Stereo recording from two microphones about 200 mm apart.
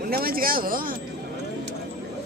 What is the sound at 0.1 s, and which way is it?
Speech, 50° right (ahead or behind).